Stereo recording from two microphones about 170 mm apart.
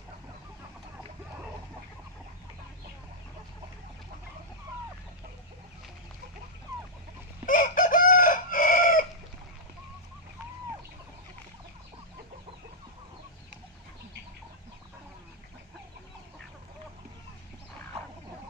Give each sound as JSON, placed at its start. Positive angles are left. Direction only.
{"t": 7.4, "sound": "chicken", "side_deg": 50}